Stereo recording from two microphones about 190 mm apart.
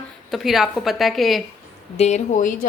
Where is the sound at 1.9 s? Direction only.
35° left (ahead or behind).